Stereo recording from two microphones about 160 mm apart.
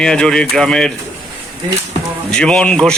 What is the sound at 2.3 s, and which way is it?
Speech, 5° left (ahead or behind).